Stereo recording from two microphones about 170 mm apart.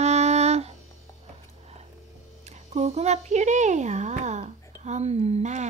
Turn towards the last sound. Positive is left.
turn(degrees=-45)  # may be behind; listen again after turning